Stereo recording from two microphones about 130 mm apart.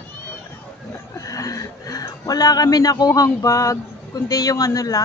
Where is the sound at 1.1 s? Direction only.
25° left (ahead or behind).